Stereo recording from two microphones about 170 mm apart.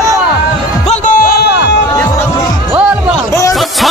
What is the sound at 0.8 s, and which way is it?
Music, 45° left (ahead or behind).